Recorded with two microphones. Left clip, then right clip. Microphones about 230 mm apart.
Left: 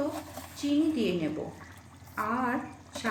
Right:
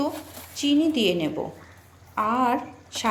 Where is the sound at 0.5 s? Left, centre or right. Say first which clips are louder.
Right 6 dB; right.